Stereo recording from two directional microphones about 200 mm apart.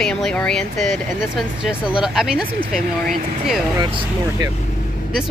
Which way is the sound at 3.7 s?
20° right (ahead or behind).